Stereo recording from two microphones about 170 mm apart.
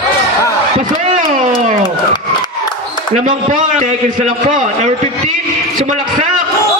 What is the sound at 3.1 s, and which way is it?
A man's voice, 50° right (ahead or behind).